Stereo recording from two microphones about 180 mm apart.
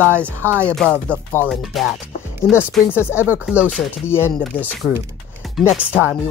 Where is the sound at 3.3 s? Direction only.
10° right (ahead or behind).